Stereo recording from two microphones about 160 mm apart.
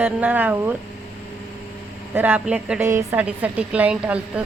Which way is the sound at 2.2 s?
10° right (ahead or behind).